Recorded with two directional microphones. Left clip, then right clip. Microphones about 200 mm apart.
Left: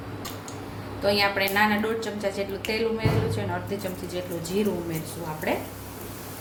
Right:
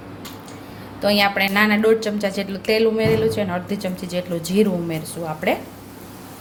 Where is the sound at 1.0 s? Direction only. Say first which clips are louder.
Right 5 dB; 50° right (ahead or behind).